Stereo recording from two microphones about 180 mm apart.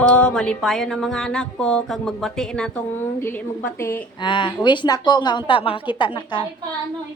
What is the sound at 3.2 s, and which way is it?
Speech, 10° left (ahead or behind).